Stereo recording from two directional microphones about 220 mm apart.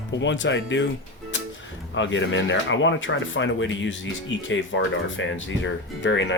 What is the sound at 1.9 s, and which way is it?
Speech, 55° left (ahead or behind).